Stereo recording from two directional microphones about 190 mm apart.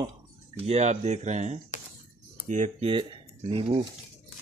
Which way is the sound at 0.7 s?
35° right (ahead or behind).